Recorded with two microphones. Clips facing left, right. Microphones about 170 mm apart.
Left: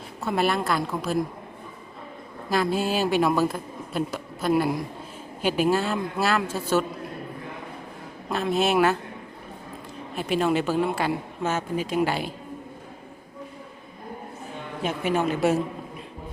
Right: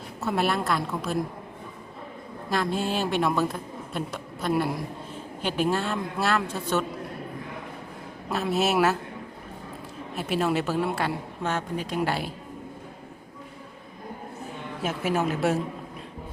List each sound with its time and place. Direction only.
0.2 s a man's voice: centre (ahead or behind)
2.5 s a man's voice: 5° left (ahead or behind)
8.3 s a man's voice: 5° right (ahead or behind)
10.2 s a man's voice: centre (ahead or behind)
14.8 s a man's voice: 5° right (ahead or behind)